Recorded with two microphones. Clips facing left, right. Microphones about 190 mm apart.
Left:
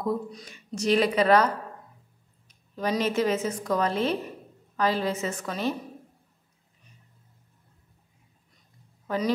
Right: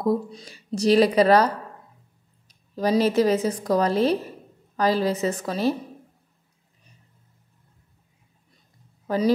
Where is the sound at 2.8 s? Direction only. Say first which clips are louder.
Right 6 dB; 35° right (ahead or behind).